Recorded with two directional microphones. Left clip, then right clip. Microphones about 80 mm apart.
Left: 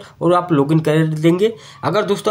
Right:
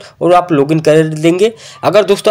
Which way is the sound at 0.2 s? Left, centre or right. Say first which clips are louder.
Right 6 dB; right.